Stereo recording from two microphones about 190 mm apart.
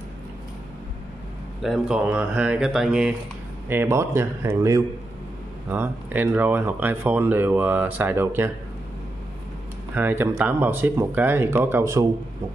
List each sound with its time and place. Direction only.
1.6 s speech: 5° right (ahead or behind)
9.9 s speech: 10° right (ahead or behind)